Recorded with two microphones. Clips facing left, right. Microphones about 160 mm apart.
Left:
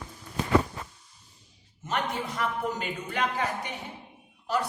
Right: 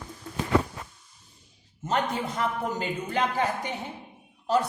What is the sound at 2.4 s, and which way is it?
Speech, 30° right (ahead or behind).